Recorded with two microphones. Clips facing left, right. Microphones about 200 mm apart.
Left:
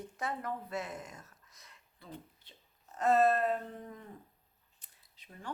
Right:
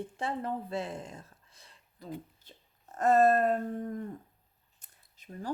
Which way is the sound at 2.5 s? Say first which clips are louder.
Right 5 dB; 45° right (ahead or behind).